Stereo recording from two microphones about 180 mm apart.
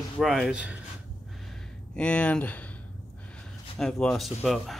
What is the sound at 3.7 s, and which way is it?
Speech, 5° left (ahead or behind).